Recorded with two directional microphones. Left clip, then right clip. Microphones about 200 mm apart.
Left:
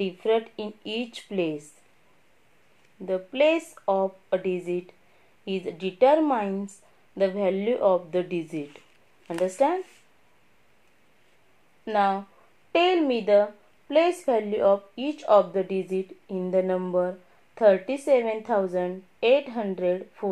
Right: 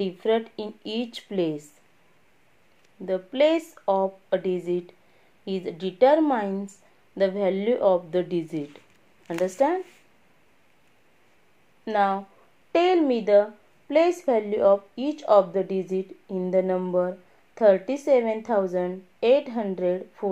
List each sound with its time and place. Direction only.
0.0 s a woman's voice: 50° right (ahead or behind)
3.1 s a woman's voice: 50° right (ahead or behind)
11.8 s a woman's voice: 45° right (ahead or behind)